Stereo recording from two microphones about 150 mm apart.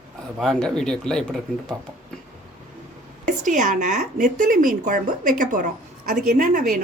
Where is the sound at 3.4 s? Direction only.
55° right (ahead or behind).